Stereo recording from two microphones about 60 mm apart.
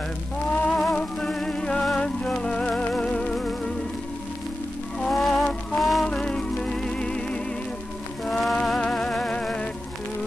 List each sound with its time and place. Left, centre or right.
0.7 s music: centre
0.9 s music: centre
5.1 s music: centre
6.0 s music: centre